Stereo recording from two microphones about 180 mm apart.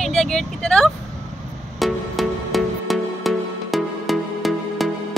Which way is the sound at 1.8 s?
Centre (ahead or behind).